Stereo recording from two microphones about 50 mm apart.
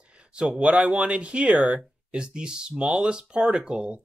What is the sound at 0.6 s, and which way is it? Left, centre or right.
Speech, right.